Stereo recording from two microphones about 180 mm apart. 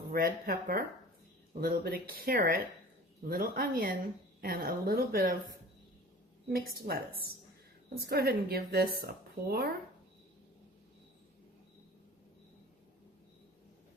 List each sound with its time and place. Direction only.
0.1 s speech: 55° right (ahead or behind)
6.8 s speech: 55° right (ahead or behind)